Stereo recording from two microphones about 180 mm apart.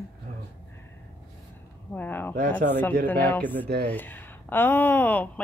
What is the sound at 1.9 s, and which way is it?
A woman's voice, 10° left (ahead or behind).